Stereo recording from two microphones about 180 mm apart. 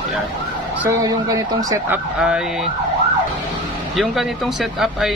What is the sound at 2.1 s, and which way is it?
Speech, 5° right (ahead or behind).